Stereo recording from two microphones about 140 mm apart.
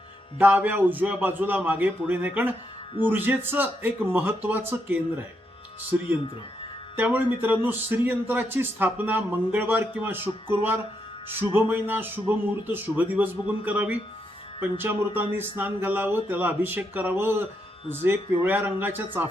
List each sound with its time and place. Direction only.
0.3 s speech: 10° right (ahead or behind)
6.9 s speech: 15° right (ahead or behind)